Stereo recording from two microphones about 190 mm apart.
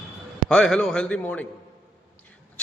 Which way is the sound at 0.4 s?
5° left (ahead or behind).